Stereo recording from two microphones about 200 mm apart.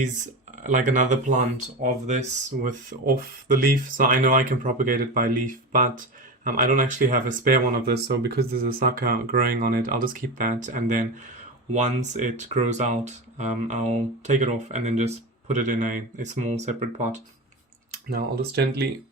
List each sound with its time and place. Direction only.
0.6 s speech: 40° right (ahead or behind)
18.1 s speech: 55° right (ahead or behind)